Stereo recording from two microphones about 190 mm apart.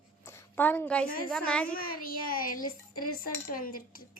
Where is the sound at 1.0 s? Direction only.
45° left (ahead or behind).